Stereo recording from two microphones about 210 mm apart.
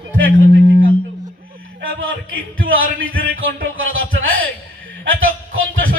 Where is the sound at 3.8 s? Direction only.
70° right (ahead or behind).